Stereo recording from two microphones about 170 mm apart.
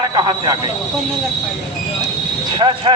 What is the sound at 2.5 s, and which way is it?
Speech, 25° right (ahead or behind).